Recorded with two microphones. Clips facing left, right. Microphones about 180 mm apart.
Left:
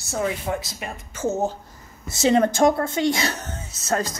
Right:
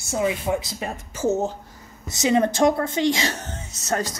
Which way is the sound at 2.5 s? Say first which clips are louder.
Left 1 dB; 50° left (ahead or behind).